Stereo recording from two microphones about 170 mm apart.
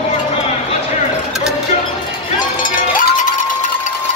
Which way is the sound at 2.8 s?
50° left (ahead or behind).